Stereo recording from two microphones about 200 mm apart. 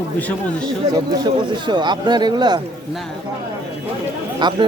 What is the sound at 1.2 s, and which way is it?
Speech, 20° right (ahead or behind).